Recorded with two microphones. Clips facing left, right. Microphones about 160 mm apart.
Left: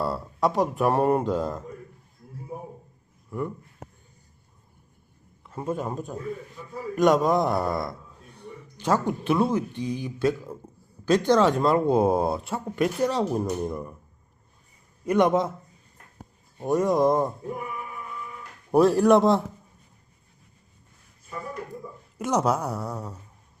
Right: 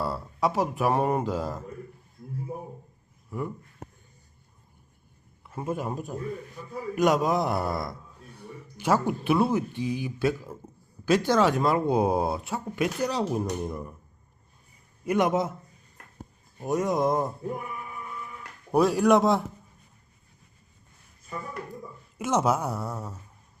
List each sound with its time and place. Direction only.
0.0 s speech: centre (ahead or behind)
3.2 s speech: 5° right (ahead or behind)
5.5 s speech: 10° right (ahead or behind)
15.0 s speech: 5° right (ahead or behind)
16.6 s speech: centre (ahead or behind)
18.7 s speech: centre (ahead or behind)
22.2 s speech: 5° right (ahead or behind)